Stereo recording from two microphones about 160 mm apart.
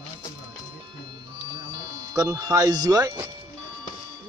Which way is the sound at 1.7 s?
20° right (ahead or behind).